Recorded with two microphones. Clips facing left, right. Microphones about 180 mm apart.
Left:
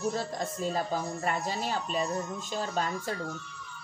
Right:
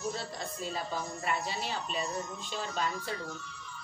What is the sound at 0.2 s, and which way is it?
Speech, 45° left (ahead or behind).